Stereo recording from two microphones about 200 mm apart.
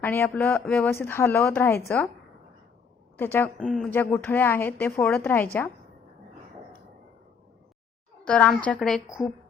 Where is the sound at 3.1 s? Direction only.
10° left (ahead or behind).